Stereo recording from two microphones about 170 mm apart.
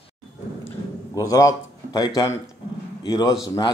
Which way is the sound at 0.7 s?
20° left (ahead or behind).